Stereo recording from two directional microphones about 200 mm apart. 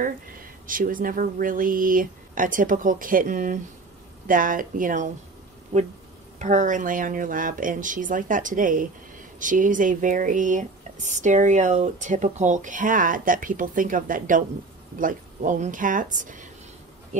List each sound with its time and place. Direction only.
0.7 s speech: 45° right (ahead or behind)
6.4 s speech: 40° right (ahead or behind)